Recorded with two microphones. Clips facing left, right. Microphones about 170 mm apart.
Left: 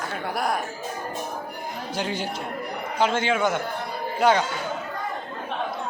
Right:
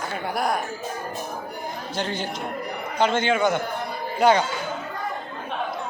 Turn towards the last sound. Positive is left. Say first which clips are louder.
# right 2 dB
turn(degrees=0)  # may be behind; listen again after turning